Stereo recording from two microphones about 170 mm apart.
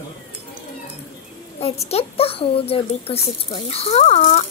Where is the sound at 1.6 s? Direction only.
35° left (ahead or behind).